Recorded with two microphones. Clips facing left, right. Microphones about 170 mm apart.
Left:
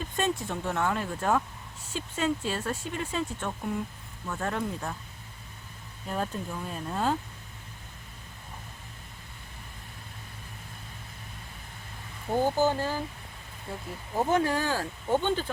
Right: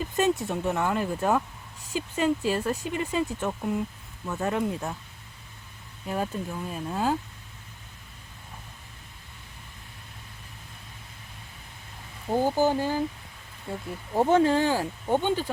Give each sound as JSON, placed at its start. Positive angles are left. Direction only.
{"t": 0.0, "sound": "speech", "side_deg": -5}
{"t": 6.1, "sound": "speech", "side_deg": -5}
{"t": 12.3, "sound": "speech", "side_deg": -10}
{"t": 14.2, "sound": "speech", "side_deg": -25}